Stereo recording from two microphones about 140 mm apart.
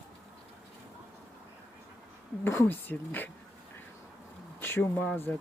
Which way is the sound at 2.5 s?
15° left (ahead or behind).